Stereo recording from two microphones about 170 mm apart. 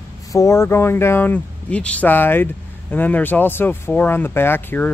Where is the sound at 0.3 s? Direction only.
20° left (ahead or behind).